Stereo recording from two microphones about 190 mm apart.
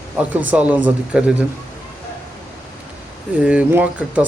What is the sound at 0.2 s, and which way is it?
Speech, 5° right (ahead or behind).